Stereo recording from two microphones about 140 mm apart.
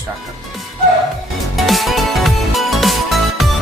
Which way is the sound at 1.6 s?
Centre (ahead or behind).